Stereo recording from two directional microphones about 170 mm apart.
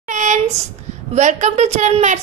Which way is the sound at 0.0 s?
45° right (ahead or behind).